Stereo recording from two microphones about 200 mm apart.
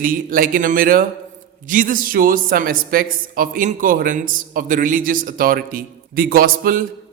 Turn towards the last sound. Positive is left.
turn(degrees=-45)  # may be behind; listen again after turning